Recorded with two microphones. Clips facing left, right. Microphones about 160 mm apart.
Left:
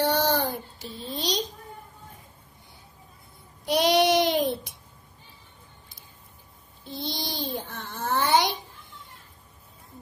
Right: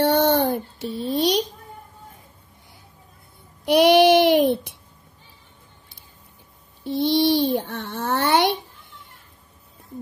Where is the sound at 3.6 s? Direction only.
65° right (ahead or behind).